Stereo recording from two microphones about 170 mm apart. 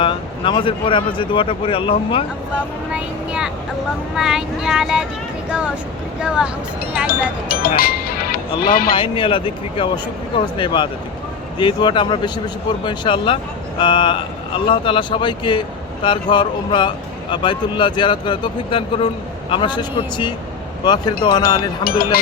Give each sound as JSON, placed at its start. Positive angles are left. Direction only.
{"t": 0.0, "sound": "speech", "side_deg": 30}
{"t": 2.9, "sound": "speech", "side_deg": -5}
{"t": 7.1, "sound": "speech", "side_deg": 60}
{"t": 7.8, "sound": "music", "side_deg": 60}
{"t": 8.7, "sound": "speech", "side_deg": 60}
{"t": 9.0, "sound": "speech", "side_deg": 30}
{"t": 21.8, "sound": "speech", "side_deg": 60}